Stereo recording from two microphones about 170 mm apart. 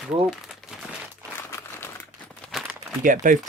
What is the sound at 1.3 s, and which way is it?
Crumpling, 15° left (ahead or behind).